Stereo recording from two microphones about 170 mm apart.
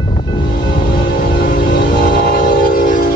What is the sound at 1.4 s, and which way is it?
Train, 55° left (ahead or behind).